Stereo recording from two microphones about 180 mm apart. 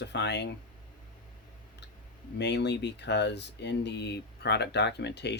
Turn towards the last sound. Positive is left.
turn(degrees=70)  # may be behind; listen again after turning